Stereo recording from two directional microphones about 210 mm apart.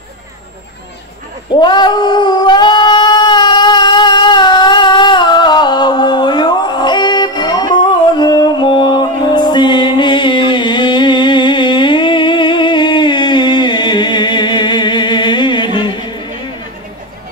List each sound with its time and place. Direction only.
1.5 s cat: 20° left (ahead or behind)